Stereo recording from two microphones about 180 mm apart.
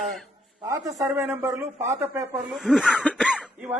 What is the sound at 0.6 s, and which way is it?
A man's voice, 15° right (ahead or behind).